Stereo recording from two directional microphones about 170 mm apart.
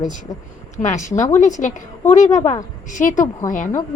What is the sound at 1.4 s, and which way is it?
Speech, 45° left (ahead or behind).